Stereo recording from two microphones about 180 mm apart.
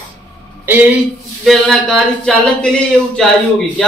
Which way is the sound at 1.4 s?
Centre (ahead or behind).